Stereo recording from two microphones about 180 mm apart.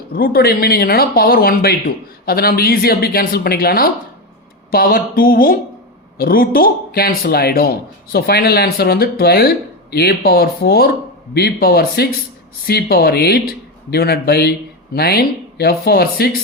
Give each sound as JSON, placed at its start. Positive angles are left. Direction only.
{"t": 0.1, "sound": "speech", "side_deg": 55}